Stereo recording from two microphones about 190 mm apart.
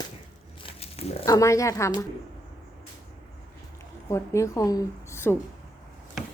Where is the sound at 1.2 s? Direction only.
15° left (ahead or behind).